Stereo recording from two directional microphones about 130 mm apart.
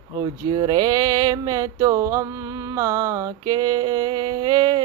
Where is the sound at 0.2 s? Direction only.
30° right (ahead or behind).